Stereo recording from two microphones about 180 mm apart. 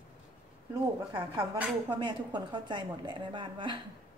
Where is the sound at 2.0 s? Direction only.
25° right (ahead or behind).